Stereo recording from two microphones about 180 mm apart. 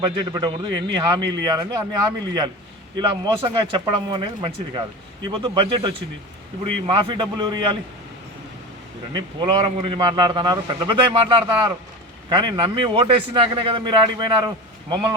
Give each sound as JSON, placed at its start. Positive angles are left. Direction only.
{"t": 0.0, "sound": "a man's voice", "side_deg": -25}
{"t": 9.1, "sound": "a man's voice", "side_deg": -25}